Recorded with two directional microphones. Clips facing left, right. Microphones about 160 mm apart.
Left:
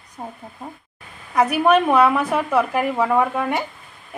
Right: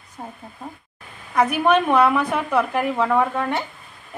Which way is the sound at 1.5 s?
5° left (ahead or behind).